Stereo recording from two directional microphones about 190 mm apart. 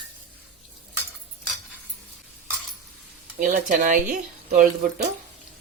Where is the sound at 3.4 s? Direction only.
45° right (ahead or behind).